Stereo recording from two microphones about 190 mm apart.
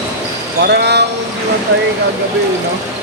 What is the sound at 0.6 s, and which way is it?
Speech, 60° right (ahead or behind).